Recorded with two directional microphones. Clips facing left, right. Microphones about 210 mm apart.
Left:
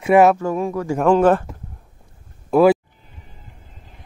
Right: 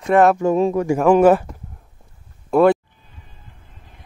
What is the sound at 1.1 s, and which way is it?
Speech, 10° right (ahead or behind).